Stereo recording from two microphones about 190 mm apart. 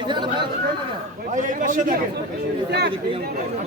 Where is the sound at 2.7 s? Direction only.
60° right (ahead or behind).